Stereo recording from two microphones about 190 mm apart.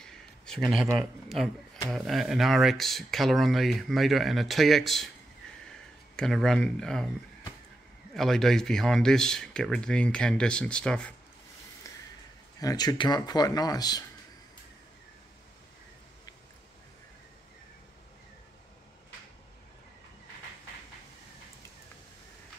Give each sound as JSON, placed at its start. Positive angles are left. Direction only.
{"t": 0.0, "sound": "a sound", "side_deg": 5}
{"t": 0.9, "sound": "speech", "side_deg": 0}
{"t": 6.1, "sound": "speech", "side_deg": 5}
{"t": 8.1, "sound": "speech", "side_deg": 0}
{"t": 12.5, "sound": "speech", "side_deg": 20}